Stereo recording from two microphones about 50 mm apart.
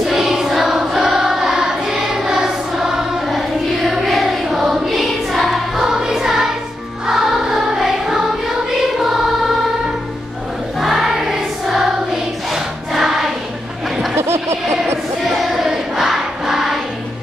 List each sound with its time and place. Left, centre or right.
0.0 s choir: centre
7.1 s music: centre
10.8 s choir: centre
14.1 s a sound: right
15.2 s choir: centre